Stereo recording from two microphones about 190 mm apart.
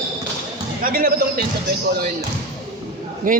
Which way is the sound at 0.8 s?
50° right (ahead or behind).